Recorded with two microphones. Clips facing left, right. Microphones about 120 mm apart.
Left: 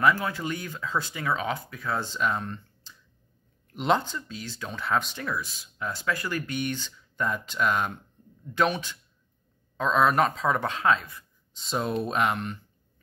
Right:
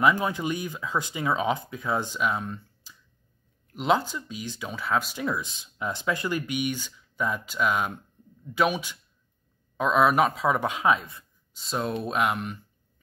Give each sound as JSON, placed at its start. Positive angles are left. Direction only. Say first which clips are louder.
{"t": 0.0, "sound": "speech", "louder": "right 1 dB", "side_deg": -20}
{"t": 5.2, "sound": "speech", "louder": "right 3 dB", "side_deg": -20}
{"t": 11.5, "sound": "speech", "louder": "left 1 dB", "side_deg": 0}